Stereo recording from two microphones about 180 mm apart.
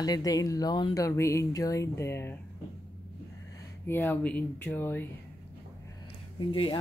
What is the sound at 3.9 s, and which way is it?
Speech, 10° left (ahead or behind).